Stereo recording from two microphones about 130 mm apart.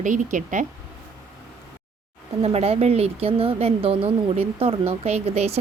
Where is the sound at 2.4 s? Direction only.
50° right (ahead or behind).